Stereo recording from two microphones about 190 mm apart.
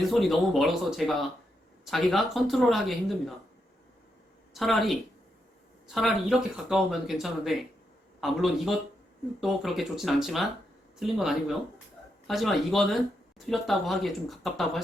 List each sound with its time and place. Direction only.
0.1 s speech: centre (ahead or behind)
4.5 s speech: centre (ahead or behind)